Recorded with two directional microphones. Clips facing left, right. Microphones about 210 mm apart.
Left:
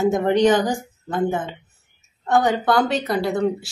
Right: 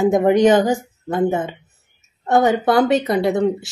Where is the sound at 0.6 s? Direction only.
25° right (ahead or behind).